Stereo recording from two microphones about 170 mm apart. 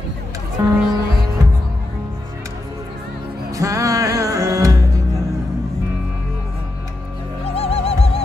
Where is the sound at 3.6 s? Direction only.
20° right (ahead or behind).